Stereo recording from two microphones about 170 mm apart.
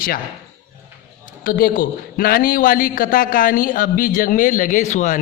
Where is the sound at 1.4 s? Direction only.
55° left (ahead or behind).